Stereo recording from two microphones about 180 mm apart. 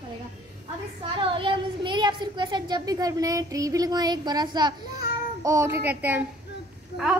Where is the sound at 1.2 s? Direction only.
30° right (ahead or behind).